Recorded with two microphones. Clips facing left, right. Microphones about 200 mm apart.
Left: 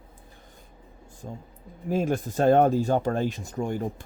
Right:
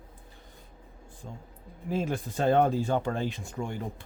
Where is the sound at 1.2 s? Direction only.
40° left (ahead or behind).